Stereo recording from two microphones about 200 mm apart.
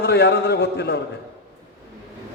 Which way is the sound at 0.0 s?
55° left (ahead or behind).